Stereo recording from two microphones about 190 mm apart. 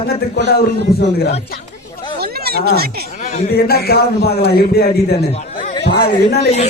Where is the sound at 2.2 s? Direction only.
55° right (ahead or behind).